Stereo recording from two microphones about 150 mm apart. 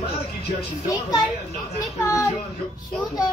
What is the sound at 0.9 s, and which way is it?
A child's voice, 25° left (ahead or behind).